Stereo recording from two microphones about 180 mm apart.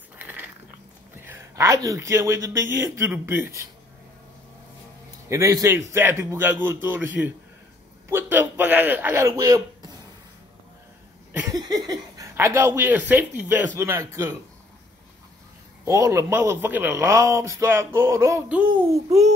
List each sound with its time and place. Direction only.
0.2 s biting: 10° right (ahead or behind)
1.1 s a man's voice: 10° right (ahead or behind)
5.3 s a man's voice: 20° right (ahead or behind)
8.1 s a man's voice: 10° right (ahead or behind)
11.5 s a man's voice: 20° right (ahead or behind)
15.8 s a man's voice: 15° right (ahead or behind)
19.0 s a child's voice: 35° right (ahead or behind)